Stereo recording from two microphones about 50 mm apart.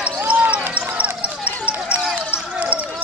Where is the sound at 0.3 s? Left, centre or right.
Right.